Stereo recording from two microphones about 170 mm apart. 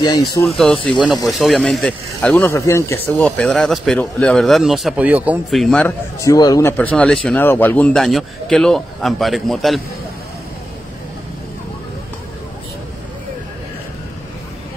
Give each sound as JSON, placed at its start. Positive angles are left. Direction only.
{"t": 0.0, "sound": "speech", "side_deg": 25}
{"t": 1.0, "sound": "a man's voice", "side_deg": 0}
{"t": 3.3, "sound": "a man's voice", "side_deg": 5}
{"t": 6.2, "sound": "speech", "side_deg": 20}
{"t": 6.8, "sound": "a man's voice", "side_deg": 5}